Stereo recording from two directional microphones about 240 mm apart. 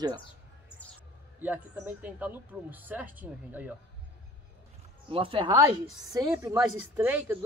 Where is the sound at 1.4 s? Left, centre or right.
Centre.